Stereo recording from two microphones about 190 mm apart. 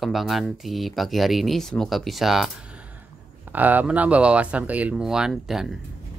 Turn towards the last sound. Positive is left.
turn(degrees=0)  # may be behind; listen again after turning